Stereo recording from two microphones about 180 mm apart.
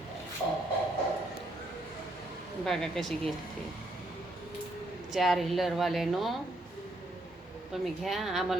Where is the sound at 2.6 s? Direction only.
Centre (ahead or behind).